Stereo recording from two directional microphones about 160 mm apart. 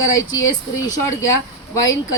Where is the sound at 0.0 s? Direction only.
20° left (ahead or behind).